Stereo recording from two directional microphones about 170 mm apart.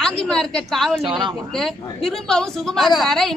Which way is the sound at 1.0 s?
30° right (ahead or behind).